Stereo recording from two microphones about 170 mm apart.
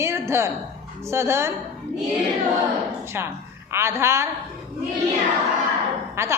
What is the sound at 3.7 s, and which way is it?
Speech, 15° right (ahead or behind).